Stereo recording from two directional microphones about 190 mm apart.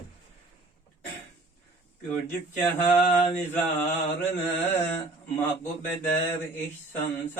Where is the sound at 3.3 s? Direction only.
10° left (ahead or behind).